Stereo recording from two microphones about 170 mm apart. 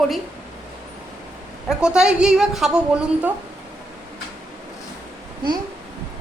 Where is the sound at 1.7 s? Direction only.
5° right (ahead or behind).